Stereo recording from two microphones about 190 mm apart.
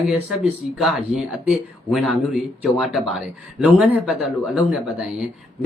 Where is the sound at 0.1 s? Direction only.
Centre (ahead or behind).